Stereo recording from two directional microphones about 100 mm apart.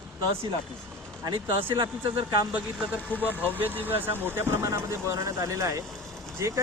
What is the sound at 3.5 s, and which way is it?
A man's voice, 20° right (ahead or behind).